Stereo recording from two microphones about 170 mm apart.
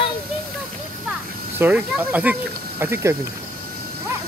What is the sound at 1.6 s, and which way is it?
Speech, 10° right (ahead or behind).